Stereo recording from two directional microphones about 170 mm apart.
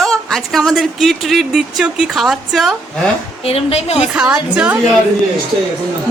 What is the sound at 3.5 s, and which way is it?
Speech, 35° left (ahead or behind).